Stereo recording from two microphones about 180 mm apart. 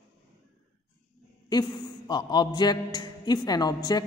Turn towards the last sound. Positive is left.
turn(degrees=20)  # may be behind; listen again after turning